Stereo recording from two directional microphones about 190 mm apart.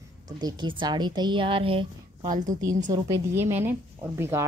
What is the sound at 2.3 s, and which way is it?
Speech, 40° right (ahead or behind).